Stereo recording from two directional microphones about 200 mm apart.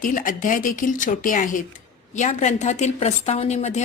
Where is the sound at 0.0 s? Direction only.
40° left (ahead or behind).